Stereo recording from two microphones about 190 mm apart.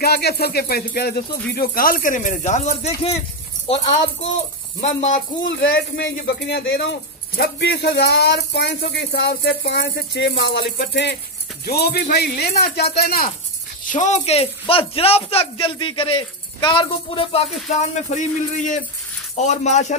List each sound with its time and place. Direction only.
0.0 s speech: 55° left (ahead or behind); by 2.9 s 40° left (ahead or behind)
4.8 s a man's voice: 40° left (ahead or behind)
5.5 s speech: 65° left (ahead or behind)
13.9 s a man's voice: 40° left (ahead or behind)